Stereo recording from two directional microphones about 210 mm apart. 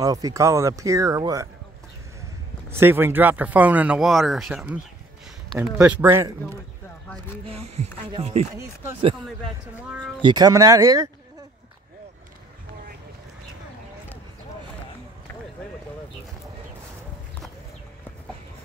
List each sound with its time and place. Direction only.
0.0 s speech: 15° right (ahead or behind)
2.7 s speech: 10° right (ahead or behind)
7.4 s speech: 30° right (ahead or behind)
9.8 s speech: 5° right (ahead or behind)
10.2 s speech: 20° right (ahead or behind)